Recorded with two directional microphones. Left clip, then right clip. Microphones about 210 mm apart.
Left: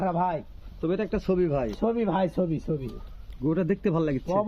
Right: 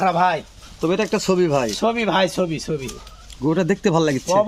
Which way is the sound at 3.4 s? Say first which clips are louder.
Right 7 dB; 35° right (ahead or behind).